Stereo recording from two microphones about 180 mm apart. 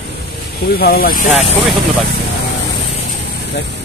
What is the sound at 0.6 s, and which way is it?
Speech, 55° left (ahead or behind).